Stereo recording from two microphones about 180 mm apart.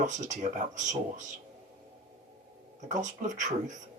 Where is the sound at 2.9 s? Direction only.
45° right (ahead or behind).